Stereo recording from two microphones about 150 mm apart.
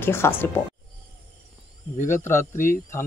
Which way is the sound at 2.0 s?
55° left (ahead or behind).